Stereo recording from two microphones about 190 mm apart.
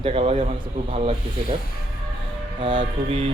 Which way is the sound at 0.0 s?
30° right (ahead or behind).